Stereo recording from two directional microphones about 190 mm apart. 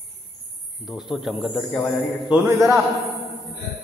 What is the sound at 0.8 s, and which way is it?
A man's voice, centre (ahead or behind).